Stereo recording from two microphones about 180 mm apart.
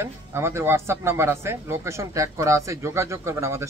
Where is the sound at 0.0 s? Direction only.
15° right (ahead or behind).